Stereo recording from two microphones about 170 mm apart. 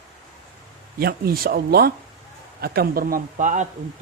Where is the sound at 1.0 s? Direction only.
65° right (ahead or behind).